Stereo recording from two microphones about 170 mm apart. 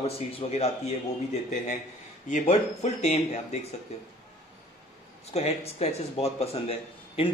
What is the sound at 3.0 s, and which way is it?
Speech, 45° left (ahead or behind).